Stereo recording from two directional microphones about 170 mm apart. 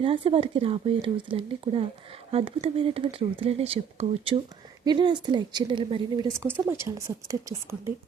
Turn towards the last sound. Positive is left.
turn(degrees=-20)  # may be behind; listen again after turning